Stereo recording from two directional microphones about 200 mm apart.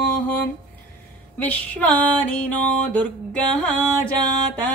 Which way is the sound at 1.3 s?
10° left (ahead or behind).